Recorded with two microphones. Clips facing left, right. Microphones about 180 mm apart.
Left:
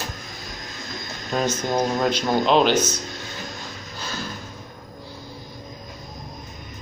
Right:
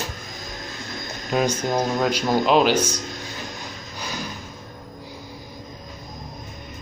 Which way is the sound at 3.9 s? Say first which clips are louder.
Right 1 dB; 15° right (ahead or behind).